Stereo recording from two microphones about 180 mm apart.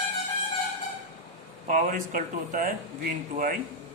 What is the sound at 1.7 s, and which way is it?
A man's voice, 50° right (ahead or behind).